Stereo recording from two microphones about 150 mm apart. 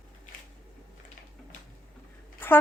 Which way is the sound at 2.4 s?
15° left (ahead or behind).